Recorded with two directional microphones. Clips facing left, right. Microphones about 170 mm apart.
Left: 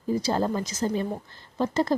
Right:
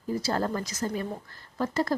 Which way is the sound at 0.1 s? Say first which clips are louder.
Left 3 dB; 20° left (ahead or behind).